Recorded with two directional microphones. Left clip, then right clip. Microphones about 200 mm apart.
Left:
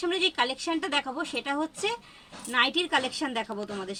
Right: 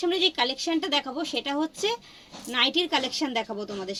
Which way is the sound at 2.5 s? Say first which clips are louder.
Right 1 dB; 15° left (ahead or behind).